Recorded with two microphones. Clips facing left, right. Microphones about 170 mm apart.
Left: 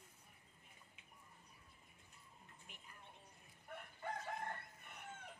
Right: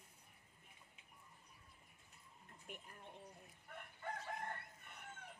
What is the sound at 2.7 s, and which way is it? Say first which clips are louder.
Speech: right 13 dB; 50° right (ahead or behind).